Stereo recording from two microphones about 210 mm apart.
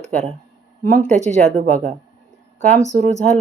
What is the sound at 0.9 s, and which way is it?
Speech, 35° right (ahead or behind).